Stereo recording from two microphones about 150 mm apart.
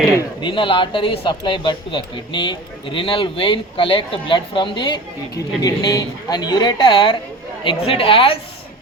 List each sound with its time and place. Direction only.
0.2 s speech: 35° left (ahead or behind)